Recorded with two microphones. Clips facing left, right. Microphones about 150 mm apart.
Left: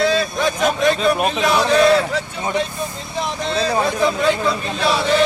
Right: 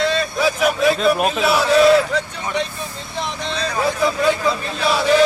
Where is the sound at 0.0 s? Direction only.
Centre (ahead or behind).